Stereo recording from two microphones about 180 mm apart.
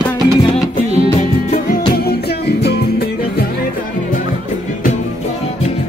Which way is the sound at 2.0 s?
60° left (ahead or behind).